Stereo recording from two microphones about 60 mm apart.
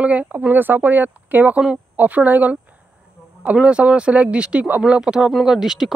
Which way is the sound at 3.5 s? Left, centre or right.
Centre.